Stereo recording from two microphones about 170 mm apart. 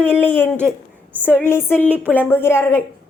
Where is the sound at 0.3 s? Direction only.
10° left (ahead or behind).